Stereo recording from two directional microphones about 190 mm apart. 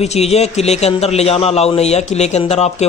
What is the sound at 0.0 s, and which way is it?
A man's voice, 35° left (ahead or behind).